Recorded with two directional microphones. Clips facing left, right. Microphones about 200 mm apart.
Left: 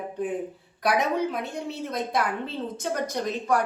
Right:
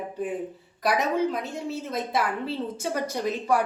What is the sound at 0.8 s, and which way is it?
A woman's voice, centre (ahead or behind).